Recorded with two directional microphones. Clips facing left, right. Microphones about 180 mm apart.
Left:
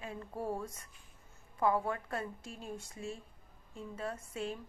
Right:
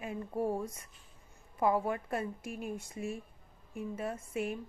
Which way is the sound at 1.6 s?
25° right (ahead or behind).